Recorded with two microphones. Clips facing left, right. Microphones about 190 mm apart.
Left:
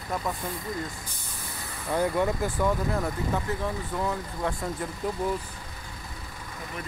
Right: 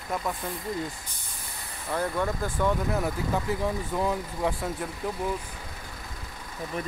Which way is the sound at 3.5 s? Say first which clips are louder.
Right 2 dB; 10° right (ahead or behind).